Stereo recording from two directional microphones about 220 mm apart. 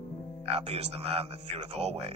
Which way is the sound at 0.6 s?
25° right (ahead or behind).